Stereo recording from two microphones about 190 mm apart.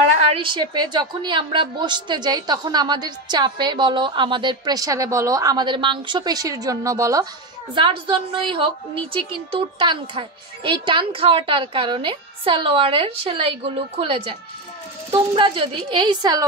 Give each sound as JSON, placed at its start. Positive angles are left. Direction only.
{"t": 0.3, "sound": "a woman's voice", "side_deg": -25}